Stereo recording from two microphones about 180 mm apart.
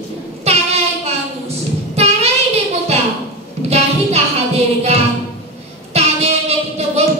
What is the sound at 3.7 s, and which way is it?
Music, 35° right (ahead or behind).